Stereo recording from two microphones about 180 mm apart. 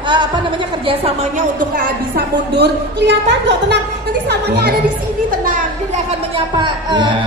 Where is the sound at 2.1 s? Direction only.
70° right (ahead or behind).